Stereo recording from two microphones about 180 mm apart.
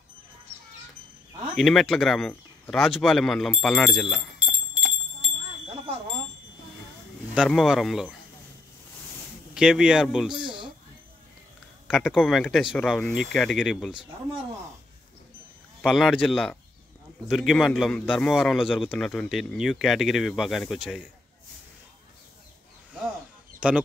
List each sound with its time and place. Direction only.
1.6 s speech: centre (ahead or behind)
7.3 s a man's voice: centre (ahead or behind)
9.5 s a man's voice: 5° right (ahead or behind)
10.3 s a sound: 25° right (ahead or behind)
11.9 s a man's voice: 5° right (ahead or behind)
15.8 s a man's voice: centre (ahead or behind)
23.6 s speech: 5° right (ahead or behind)